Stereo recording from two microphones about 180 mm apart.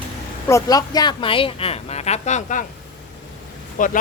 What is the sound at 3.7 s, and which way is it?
Speech, 45° left (ahead or behind).